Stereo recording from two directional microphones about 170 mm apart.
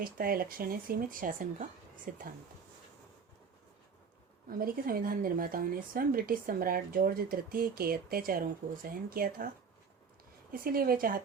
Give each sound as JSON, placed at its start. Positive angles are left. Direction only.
{"t": 0.0, "sound": "speech", "side_deg": -60}
{"t": 4.4, "sound": "speech", "side_deg": -55}
{"t": 10.5, "sound": "speech", "side_deg": -60}